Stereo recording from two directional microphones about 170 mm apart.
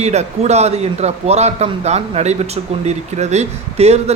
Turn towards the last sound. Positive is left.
turn(degrees=-40)  # may be behind; listen again after turning